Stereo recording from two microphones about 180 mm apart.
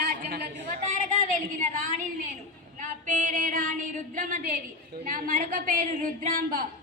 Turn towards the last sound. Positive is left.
turn(degrees=-50)  # may be behind; listen again after turning